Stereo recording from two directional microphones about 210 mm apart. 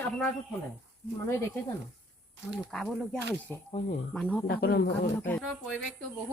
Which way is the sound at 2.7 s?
Centre (ahead or behind).